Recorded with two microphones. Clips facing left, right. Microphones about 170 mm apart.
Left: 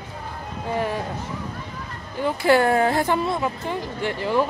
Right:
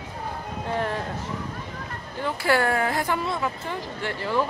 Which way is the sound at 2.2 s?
20° left (ahead or behind).